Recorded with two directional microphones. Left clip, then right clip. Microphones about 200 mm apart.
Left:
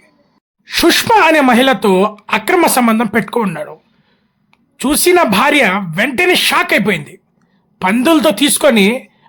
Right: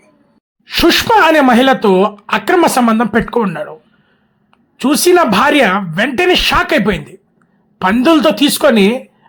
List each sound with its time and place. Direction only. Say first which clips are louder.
0.6 s speech: right 1 dB; centre (ahead or behind)